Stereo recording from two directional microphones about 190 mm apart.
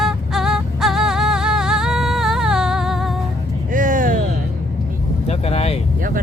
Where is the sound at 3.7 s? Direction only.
45° right (ahead or behind).